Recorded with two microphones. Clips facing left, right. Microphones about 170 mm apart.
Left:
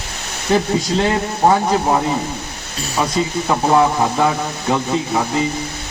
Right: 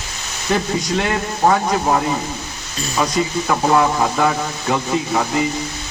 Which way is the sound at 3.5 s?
25° left (ahead or behind).